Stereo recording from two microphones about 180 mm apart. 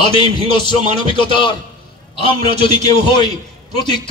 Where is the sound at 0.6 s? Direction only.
25° left (ahead or behind).